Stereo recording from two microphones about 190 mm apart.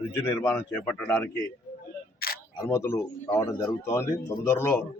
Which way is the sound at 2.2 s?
55° left (ahead or behind).